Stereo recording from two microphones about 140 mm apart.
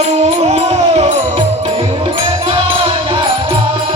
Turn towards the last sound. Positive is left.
turn(degrees=-40)  # may be behind; listen again after turning